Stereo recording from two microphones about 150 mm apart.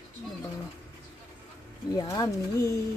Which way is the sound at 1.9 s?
25° left (ahead or behind).